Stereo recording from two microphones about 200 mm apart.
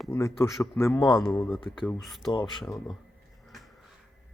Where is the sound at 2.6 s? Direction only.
Centre (ahead or behind).